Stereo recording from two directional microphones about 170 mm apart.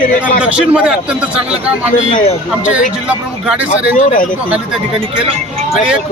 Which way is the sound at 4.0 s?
50° left (ahead or behind).